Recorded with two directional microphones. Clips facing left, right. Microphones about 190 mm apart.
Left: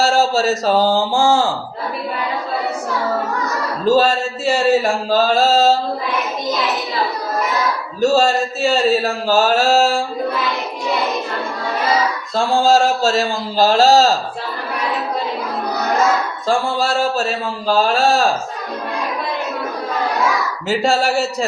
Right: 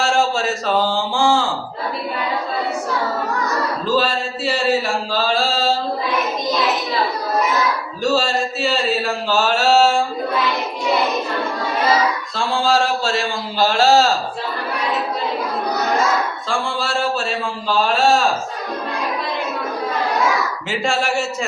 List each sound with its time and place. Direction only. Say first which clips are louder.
0.0 s speech: left 3 dB; 40° left (ahead or behind)
3.8 s a sound: left 7 dB; 45° left (ahead or behind)
8.0 s speech: left 4 dB; 45° left (ahead or behind)
12.3 s speech: left 7 dB; 45° left (ahead or behind)
16.5 s speech: left 8 dB; 40° left (ahead or behind)
20.7 s speech: left 6 dB; 40° left (ahead or behind)